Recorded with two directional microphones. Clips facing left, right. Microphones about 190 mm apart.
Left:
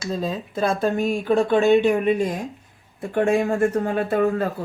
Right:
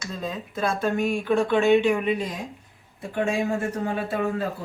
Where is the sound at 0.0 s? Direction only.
30° left (ahead or behind).